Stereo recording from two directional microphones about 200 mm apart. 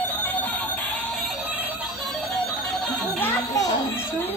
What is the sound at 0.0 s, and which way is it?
Music, 10° left (ahead or behind).